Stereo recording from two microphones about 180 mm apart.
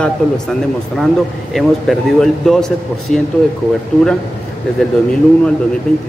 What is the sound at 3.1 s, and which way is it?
Speech, 45° left (ahead or behind).